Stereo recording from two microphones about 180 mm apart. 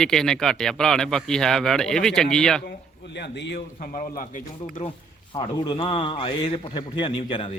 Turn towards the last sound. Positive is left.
turn(degrees=30)  # may be behind; listen again after turning